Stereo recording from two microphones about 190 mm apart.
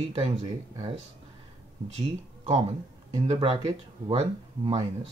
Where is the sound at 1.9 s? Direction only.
35° right (ahead or behind).